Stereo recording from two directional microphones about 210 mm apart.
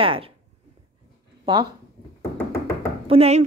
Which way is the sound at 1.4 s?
20° right (ahead or behind).